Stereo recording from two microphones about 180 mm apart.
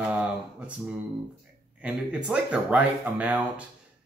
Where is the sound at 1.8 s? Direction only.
5° right (ahead or behind).